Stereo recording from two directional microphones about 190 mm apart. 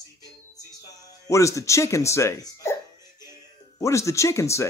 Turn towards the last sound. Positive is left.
turn(degrees=15)  # may be behind; listen again after turning